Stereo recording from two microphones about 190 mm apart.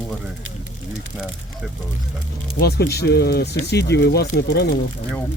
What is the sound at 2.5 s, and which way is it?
Speech, 60° left (ahead or behind).